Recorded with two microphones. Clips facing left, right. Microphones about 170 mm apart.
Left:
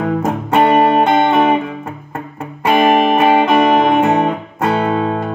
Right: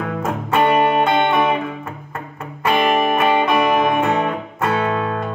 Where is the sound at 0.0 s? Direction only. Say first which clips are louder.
Left 6 dB; 25° left (ahead or behind).